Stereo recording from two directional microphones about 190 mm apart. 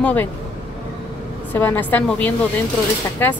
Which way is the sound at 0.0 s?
10° left (ahead or behind).